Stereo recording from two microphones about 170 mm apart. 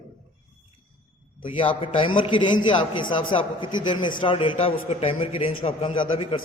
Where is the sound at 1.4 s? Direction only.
30° left (ahead or behind).